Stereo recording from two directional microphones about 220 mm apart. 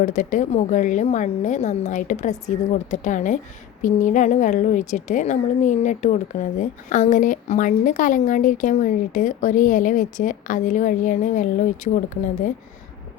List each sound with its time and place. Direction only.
0.0 s a woman's voice: 35° left (ahead or behind)